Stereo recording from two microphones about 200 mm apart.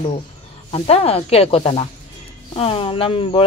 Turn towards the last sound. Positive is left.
turn(degrees=25)  # may be behind; listen again after turning